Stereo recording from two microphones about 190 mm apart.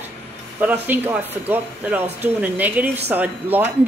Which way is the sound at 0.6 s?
10° right (ahead or behind).